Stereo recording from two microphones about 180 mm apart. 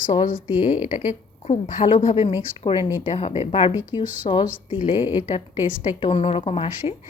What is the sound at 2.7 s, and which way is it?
A woman's voice, 25° left (ahead or behind).